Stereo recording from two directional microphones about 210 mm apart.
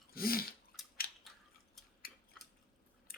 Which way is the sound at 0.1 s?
45° left (ahead or behind).